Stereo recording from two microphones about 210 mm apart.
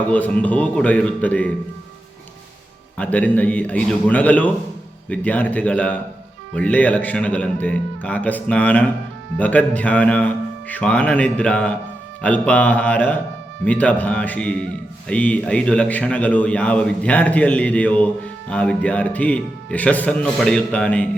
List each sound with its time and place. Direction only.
0.1 s a man's voice: 5° left (ahead or behind)
3.0 s a man's voice: 5° left (ahead or behind)